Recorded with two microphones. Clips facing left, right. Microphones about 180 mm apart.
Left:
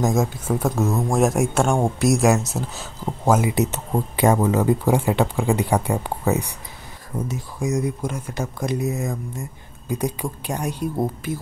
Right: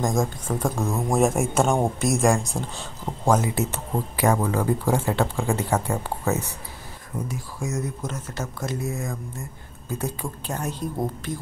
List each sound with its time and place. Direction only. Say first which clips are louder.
0.0 s speech: left 3 dB; 5° left (ahead or behind)